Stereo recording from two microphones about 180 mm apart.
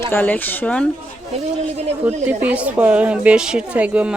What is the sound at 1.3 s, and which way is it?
Speech, 35° right (ahead or behind).